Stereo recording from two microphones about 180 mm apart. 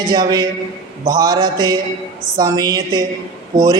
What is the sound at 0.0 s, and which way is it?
A man's voice, 25° right (ahead or behind).